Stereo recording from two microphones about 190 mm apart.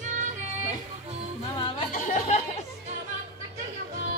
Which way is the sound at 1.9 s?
40° left (ahead or behind).